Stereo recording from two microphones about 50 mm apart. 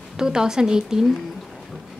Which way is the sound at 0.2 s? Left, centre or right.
Centre.